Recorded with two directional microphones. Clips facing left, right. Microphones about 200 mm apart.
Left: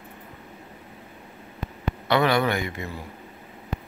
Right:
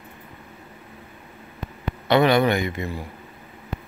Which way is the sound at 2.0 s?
20° right (ahead or behind).